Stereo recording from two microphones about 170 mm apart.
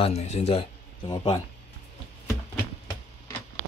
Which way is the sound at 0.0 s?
40° left (ahead or behind).